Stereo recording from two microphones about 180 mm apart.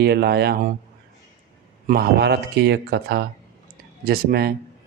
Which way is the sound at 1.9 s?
65° right (ahead or behind).